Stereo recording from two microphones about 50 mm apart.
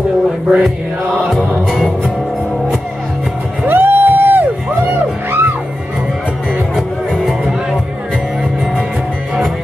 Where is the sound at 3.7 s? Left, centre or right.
Right.